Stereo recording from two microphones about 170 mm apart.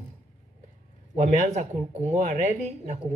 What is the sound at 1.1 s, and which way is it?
Speech, 40° right (ahead or behind).